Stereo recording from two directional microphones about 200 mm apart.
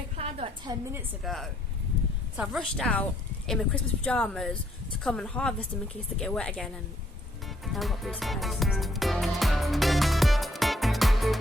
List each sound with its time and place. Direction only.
0.2 s a sound: 30° right (ahead or behind)
1.2 s a woman's voice: centre (ahead or behind)
7.6 s music: centre (ahead or behind)